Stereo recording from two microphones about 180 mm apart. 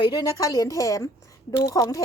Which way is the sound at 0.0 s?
20° left (ahead or behind).